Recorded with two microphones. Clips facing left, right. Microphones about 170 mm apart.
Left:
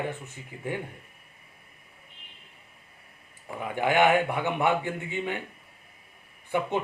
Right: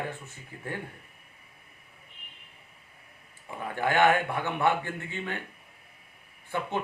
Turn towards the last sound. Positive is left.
turn(degrees=15)  # may be behind; listen again after turning